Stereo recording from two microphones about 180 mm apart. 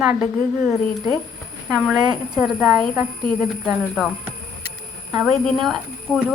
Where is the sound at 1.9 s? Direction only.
5° right (ahead or behind).